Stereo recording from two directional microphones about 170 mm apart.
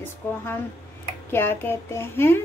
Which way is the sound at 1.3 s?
15° left (ahead or behind).